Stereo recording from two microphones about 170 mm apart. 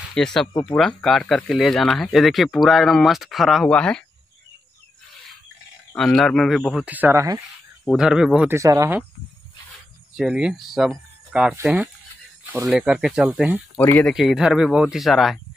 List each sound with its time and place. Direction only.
0.1 s speech: 5° left (ahead or behind)
5.9 s speech: 5° left (ahead or behind); by 7.4 s 20° right (ahead or behind)
7.9 s speech: 5° right (ahead or behind)
8.5 s speech: 20° right (ahead or behind)
10.1 s speech: 5° right (ahead or behind)
13.7 s speech: 10° left (ahead or behind)
14.1 s speech: 5° right (ahead or behind)